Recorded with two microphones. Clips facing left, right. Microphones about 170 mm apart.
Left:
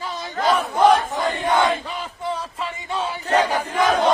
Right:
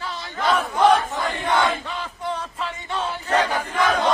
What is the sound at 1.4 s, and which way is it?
Battle cry, 15° left (ahead or behind).